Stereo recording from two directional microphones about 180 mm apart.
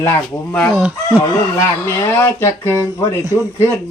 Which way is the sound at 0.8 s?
5° right (ahead or behind).